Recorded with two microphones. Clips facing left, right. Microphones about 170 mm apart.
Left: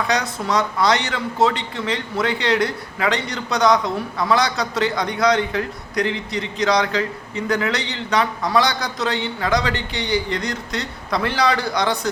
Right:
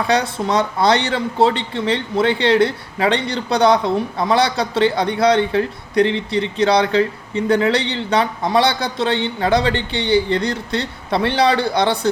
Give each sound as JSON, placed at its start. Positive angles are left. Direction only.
{"t": 0.1, "sound": "speech", "side_deg": -30}